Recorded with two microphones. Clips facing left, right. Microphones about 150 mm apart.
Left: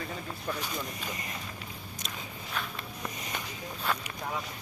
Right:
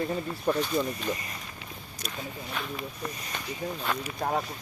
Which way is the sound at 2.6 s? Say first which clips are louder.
Even; centre (ahead or behind).